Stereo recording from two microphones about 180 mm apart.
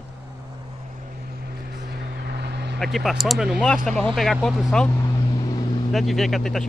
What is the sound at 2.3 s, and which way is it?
Vehicle, 70° right (ahead or behind).